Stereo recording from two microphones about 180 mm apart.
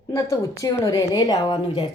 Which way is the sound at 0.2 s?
15° left (ahead or behind).